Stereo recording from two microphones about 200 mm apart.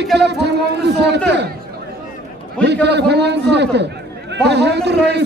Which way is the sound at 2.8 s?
55° right (ahead or behind).